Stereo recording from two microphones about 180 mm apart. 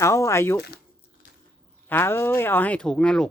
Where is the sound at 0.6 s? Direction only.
65° left (ahead or behind).